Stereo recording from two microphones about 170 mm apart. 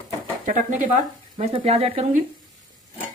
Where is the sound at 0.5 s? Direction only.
50° right (ahead or behind).